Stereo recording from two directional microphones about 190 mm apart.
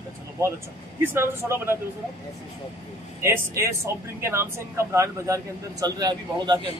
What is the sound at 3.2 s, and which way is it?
Speech, 15° right (ahead or behind).